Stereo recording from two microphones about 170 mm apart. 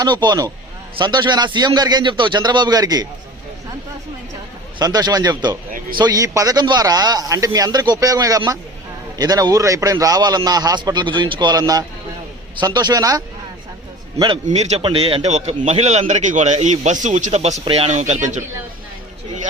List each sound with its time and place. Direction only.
0.0 s a man's voice: 25° right (ahead or behind)
4.8 s a man's voice: 25° right (ahead or behind)
14.4 s a man's voice: 40° right (ahead or behind)